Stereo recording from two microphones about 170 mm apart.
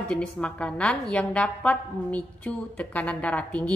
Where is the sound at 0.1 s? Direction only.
5° left (ahead or behind).